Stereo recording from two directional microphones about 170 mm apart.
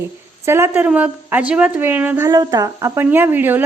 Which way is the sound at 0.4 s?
15° right (ahead or behind).